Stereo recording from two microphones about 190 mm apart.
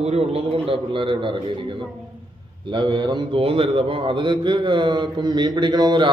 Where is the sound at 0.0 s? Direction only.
30° right (ahead or behind).